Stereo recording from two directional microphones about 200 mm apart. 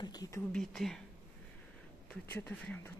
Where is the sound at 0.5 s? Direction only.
Centre (ahead or behind).